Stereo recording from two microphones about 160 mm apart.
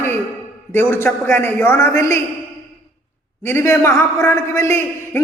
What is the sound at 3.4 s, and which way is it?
A man's voice, 15° left (ahead or behind).